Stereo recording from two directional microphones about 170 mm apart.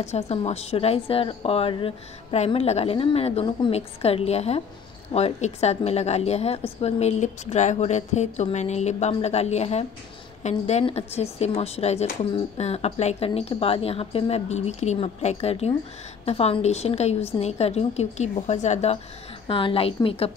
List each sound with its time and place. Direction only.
0.0 s a woman's voice: 40° left (ahead or behind)